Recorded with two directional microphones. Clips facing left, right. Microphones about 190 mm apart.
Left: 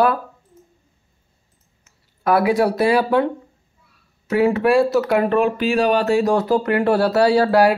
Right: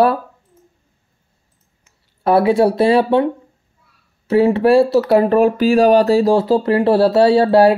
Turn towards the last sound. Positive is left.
turn(degrees=-25)  # may be behind; listen again after turning